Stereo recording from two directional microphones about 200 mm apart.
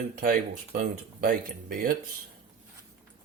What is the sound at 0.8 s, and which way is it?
Speech, 45° right (ahead or behind).